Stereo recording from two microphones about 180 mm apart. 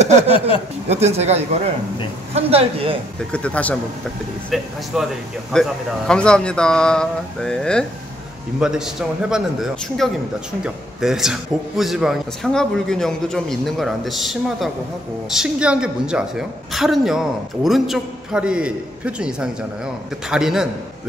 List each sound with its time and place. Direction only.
0.8 s speech: 35° right (ahead or behind)
3.3 s a man's voice: 5° left (ahead or behind)